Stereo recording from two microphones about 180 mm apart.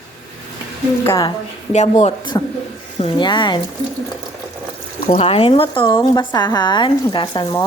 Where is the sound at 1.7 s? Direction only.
35° left (ahead or behind).